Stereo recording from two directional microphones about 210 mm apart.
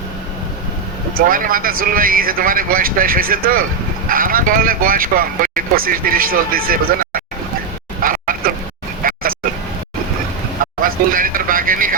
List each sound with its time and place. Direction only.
1.1 s speech: 40° right (ahead or behind)
8.0 s a sound: 40° right (ahead or behind)
9.0 s vehicle: 40° right (ahead or behind)
10.8 s vehicle: 40° right (ahead or behind)